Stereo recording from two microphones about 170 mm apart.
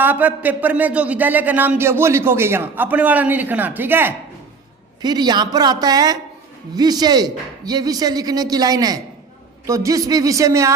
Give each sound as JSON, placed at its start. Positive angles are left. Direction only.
{"t": 0.0, "sound": "speech", "side_deg": -10}
{"t": 5.0, "sound": "speech", "side_deg": -25}